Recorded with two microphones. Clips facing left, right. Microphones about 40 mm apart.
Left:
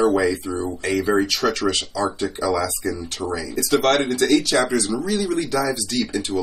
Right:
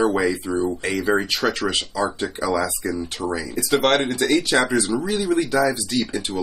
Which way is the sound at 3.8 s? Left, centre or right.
Right.